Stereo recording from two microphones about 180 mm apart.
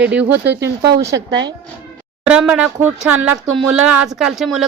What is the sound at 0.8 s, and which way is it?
Speech, 65° right (ahead or behind).